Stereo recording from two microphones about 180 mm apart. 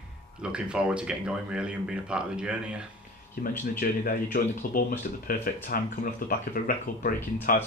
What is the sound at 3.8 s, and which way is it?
Speech, 50° left (ahead or behind).